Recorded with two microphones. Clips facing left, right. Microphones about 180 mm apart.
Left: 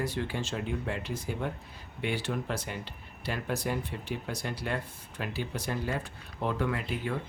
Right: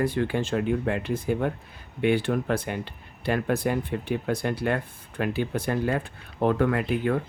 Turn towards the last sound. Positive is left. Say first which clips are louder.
# right 8 dB
turn(degrees=-55)  # may be behind; listen again after turning